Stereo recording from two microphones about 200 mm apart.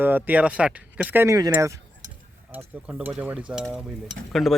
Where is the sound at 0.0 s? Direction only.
10° right (ahead or behind).